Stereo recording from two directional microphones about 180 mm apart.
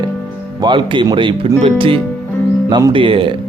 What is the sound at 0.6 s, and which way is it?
Speech, 25° right (ahead or behind).